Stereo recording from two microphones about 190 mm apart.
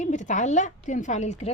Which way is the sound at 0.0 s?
40° left (ahead or behind).